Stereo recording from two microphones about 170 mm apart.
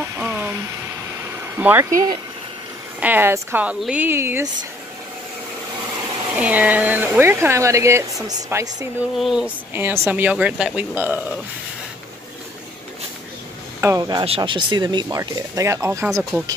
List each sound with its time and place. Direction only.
0.0 s a sound: 10° right (ahead or behind)
1.6 s speech: 10° right (ahead or behind)
6.3 s speech: 10° right (ahead or behind)
9.1 s speech: centre (ahead or behind)
13.7 s speech: 20° right (ahead or behind)
14.2 s speech: 30° right (ahead or behind); by 16.5 s 15° right (ahead or behind)